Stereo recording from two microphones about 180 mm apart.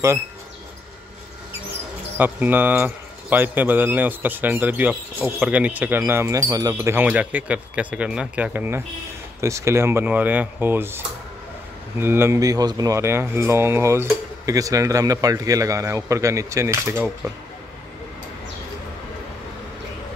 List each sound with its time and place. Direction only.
2.1 s speech: 10° right (ahead or behind)
12.0 s speech: 15° right (ahead or behind)